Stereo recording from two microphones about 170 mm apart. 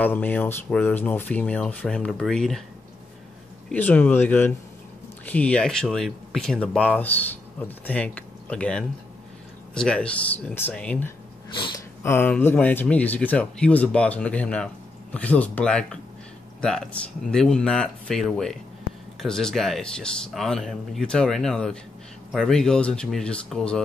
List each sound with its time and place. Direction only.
0.0 s speech: 10° left (ahead or behind)
3.7 s speech: 10° left (ahead or behind)
11.5 s sniff: 25° left (ahead or behind)
12.0 s speech: 15° left (ahead or behind)